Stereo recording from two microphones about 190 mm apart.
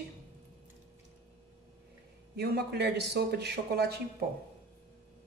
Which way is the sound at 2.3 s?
60° right (ahead or behind).